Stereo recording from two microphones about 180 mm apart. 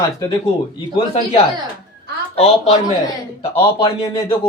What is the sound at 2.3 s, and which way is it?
Speech, 35° left (ahead or behind).